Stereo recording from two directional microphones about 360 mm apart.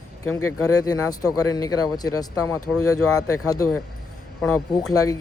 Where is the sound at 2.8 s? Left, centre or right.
Left.